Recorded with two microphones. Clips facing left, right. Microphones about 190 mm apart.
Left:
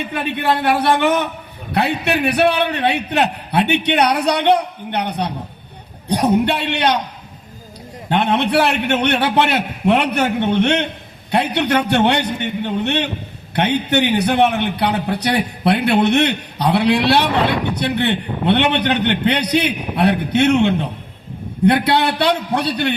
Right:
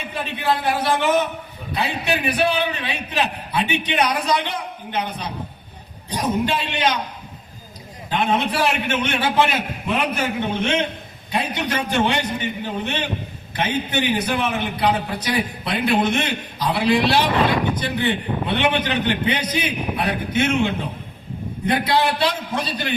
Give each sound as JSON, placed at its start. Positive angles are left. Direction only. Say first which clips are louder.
{"t": 0.1, "sound": "a man's voice", "louder": "left 2 dB", "side_deg": 65}
{"t": 8.1, "sound": "a man's voice", "louder": "left 5 dB", "side_deg": 70}